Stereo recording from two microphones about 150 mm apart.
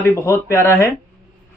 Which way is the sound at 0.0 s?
20° left (ahead or behind).